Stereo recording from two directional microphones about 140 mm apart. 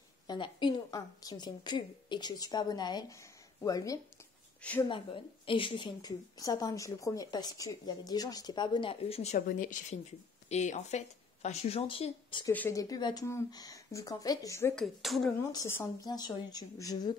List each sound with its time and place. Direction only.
0.3 s a woman's voice: 35° left (ahead or behind)
4.6 s speech: 10° left (ahead or behind)
4.8 s a woman's voice: 35° left (ahead or behind)
9.0 s speech: 50° left (ahead or behind)
9.5 s speech: 70° left (ahead or behind); by 12.4 s 35° left (ahead or behind)
12.4 s a woman's voice: 20° left (ahead or behind)
14.8 s speech: centre (ahead or behind)
15.5 s a woman's voice: 20° left (ahead or behind)
16.1 s a woman's voice: 30° left (ahead or behind)